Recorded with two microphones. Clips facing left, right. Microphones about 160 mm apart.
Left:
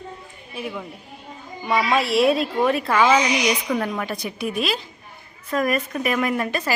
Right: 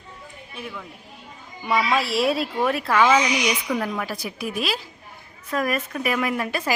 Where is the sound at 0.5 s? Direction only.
15° left (ahead or behind).